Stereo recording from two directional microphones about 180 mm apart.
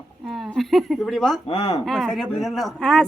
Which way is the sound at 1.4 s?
35° left (ahead or behind).